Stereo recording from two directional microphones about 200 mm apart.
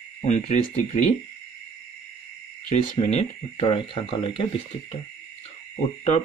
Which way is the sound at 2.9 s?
30° left (ahead or behind).